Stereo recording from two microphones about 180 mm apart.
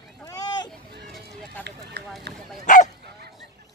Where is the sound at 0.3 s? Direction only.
25° left (ahead or behind).